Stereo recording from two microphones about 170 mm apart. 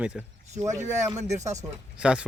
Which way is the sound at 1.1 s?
40° right (ahead or behind).